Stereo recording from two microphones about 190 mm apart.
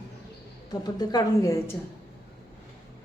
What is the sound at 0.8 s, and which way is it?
Speech, 20° left (ahead or behind).